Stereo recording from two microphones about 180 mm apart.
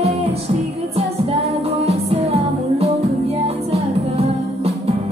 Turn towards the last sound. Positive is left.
turn(degrees=-35)  # may be behind; listen again after turning